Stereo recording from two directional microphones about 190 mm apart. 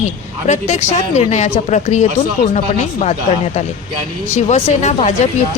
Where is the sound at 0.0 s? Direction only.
35° left (ahead or behind).